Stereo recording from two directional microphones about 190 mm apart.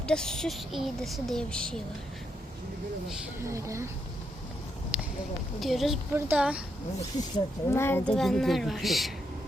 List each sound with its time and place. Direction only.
0.1 s speech: 5° left (ahead or behind)
3.4 s speech: 15° right (ahead or behind)
5.5 s speech: centre (ahead or behind)
7.2 s speech: 15° left (ahead or behind); by 9.1 s centre (ahead or behind)